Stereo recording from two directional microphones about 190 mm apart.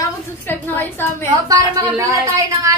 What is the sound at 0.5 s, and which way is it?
Speech, 10° left (ahead or behind).